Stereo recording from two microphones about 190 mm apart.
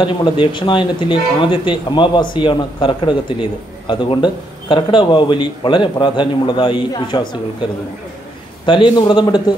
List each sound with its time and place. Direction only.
0.0 s speech: 25° left (ahead or behind)
8.6 s speech: 25° left (ahead or behind)